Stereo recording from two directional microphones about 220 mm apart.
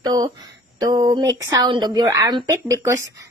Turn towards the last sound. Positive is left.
turn(degrees=-15)  # may be behind; listen again after turning